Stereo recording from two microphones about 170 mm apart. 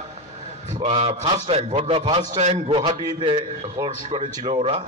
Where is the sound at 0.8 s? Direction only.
35° right (ahead or behind).